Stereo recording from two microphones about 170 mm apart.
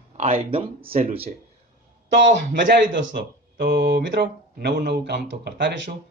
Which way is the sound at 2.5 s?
90° right.